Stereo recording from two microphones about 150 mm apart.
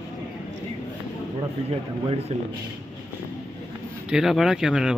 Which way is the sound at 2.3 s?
45° right (ahead or behind).